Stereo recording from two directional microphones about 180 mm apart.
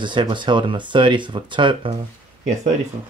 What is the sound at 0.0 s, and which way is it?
Speech, 25° right (ahead or behind).